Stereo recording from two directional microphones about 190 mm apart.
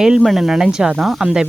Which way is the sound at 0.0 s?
5° right (ahead or behind).